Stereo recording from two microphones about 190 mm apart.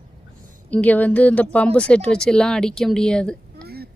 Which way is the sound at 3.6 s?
55° right (ahead or behind).